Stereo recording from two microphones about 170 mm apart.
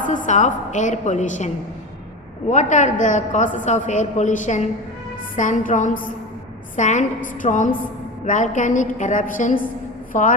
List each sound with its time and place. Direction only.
0.0 s a woman's voice: 50° left (ahead or behind)
2.5 s a woman's voice: 45° left (ahead or behind)